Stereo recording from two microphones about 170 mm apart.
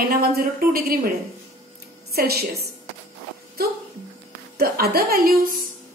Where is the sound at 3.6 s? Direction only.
65° right (ahead or behind).